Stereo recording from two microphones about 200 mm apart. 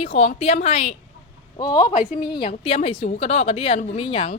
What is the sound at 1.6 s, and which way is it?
A woman's voice, 20° left (ahead or behind).